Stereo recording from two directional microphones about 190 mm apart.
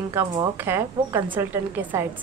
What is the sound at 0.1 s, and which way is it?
A woman's voice, 20° right (ahead or behind).